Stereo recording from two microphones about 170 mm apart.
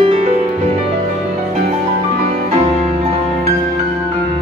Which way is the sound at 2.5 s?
35° right (ahead or behind).